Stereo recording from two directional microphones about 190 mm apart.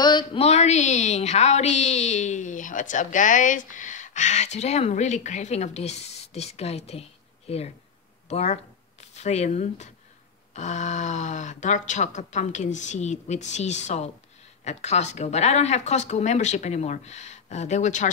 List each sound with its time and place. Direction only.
0.0 s a woman's voice: 25° left (ahead or behind)